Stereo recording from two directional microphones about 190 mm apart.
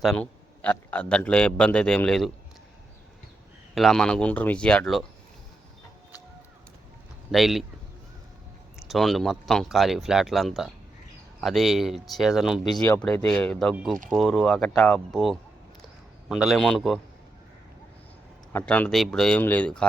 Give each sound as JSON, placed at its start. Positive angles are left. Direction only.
{"t": 0.0, "sound": "speech", "side_deg": 5}
{"t": 3.8, "sound": "speech", "side_deg": 0}
{"t": 7.3, "sound": "speech", "side_deg": 0}
{"t": 8.9, "sound": "speech", "side_deg": 0}
{"t": 18.5, "sound": "speech", "side_deg": 10}